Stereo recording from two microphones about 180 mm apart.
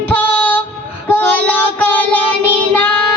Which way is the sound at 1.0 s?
10° left (ahead or behind).